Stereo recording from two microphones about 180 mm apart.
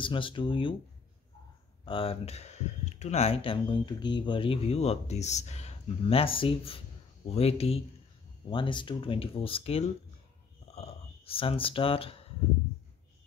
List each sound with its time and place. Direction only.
0.0 s speech: 30° left (ahead or behind)
1.9 s speech: 30° left (ahead or behind)
10.7 s a sound: 35° left (ahead or behind)